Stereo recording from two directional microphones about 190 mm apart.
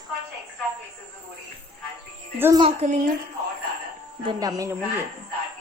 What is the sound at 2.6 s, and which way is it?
Speech, 35° right (ahead or behind).